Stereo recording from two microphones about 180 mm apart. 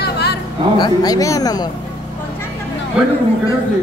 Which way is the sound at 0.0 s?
65° left (ahead or behind).